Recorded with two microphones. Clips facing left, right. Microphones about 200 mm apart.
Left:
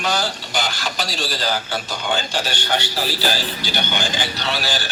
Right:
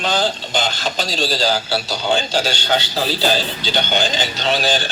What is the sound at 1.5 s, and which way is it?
A man's voice, 30° right (ahead or behind).